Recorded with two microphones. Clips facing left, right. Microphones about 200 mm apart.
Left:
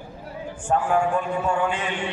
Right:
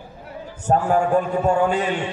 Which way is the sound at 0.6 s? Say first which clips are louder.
Right 3 dB; 40° right (ahead or behind).